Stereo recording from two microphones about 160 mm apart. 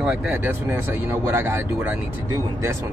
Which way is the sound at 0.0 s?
5° right (ahead or behind).